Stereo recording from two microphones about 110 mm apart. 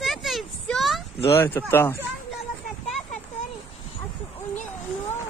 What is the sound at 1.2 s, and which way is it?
Speech, 20° left (ahead or behind).